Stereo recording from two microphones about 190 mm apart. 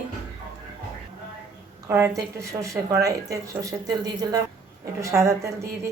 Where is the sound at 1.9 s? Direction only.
15° right (ahead or behind).